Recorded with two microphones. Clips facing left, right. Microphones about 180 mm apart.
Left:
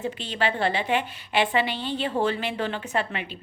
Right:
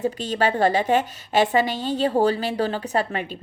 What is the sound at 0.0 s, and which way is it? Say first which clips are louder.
A woman's voice: right 5 dB; 40° right (ahead or behind).